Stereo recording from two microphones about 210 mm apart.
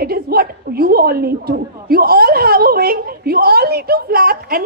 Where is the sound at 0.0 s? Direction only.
45° right (ahead or behind).